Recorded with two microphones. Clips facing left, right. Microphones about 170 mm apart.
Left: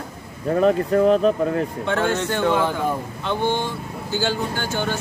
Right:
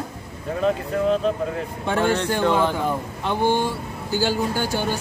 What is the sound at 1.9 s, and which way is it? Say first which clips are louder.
Speech: right 3 dB; 10° right (ahead or behind).